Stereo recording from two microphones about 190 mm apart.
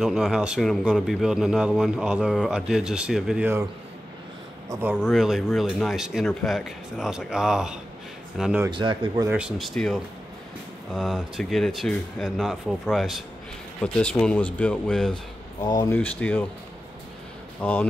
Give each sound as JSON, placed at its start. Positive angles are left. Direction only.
{"t": 0.0, "sound": "a man's voice", "side_deg": 0}
{"t": 4.6, "sound": "speech", "side_deg": -10}
{"t": 5.1, "sound": "a man's voice", "side_deg": 0}
{"t": 8.6, "sound": "speech", "side_deg": -25}
{"t": 9.3, "sound": "a man's voice", "side_deg": -5}
{"t": 15.6, "sound": "speech", "side_deg": 20}
{"t": 17.6, "sound": "speech", "side_deg": 10}